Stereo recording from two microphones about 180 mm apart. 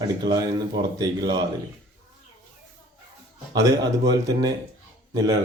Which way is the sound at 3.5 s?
20° right (ahead or behind).